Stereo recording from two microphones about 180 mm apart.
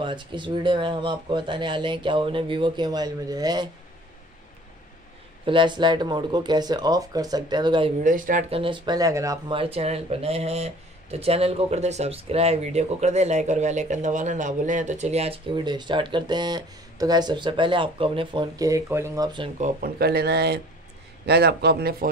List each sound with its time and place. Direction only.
0.0 s speech: 25° right (ahead or behind)
5.4 s speech: 25° right (ahead or behind)
8.0 s speech: 45° right (ahead or behind)
8.5 s speech: 30° right (ahead or behind)
9.6 s speech: 35° right (ahead or behind)
19.6 s speech: 55° right (ahead or behind)